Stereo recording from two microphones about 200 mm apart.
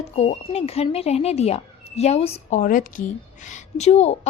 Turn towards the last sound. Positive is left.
turn(degrees=35)  # may be behind; listen again after turning